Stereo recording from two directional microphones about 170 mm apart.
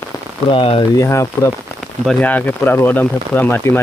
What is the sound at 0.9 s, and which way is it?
Speech, 20° left (ahead or behind).